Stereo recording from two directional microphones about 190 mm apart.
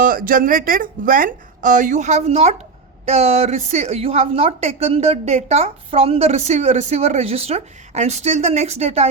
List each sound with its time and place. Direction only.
0.0 s a woman's voice: 50° right (ahead or behind)